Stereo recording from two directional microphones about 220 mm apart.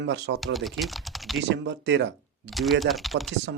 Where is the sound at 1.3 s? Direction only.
55° right (ahead or behind).